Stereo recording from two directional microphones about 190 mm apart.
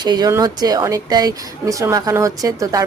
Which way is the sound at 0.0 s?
20° right (ahead or behind).